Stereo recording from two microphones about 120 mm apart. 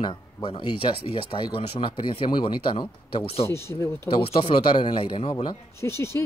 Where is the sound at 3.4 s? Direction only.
20° left (ahead or behind).